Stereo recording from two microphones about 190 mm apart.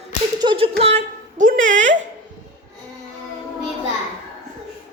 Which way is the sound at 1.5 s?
80° right.